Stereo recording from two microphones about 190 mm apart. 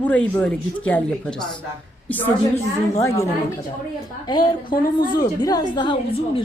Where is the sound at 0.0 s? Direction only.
10° left (ahead or behind).